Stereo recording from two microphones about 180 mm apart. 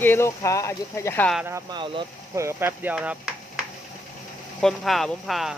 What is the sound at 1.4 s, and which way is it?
Speech, 15° right (ahead or behind).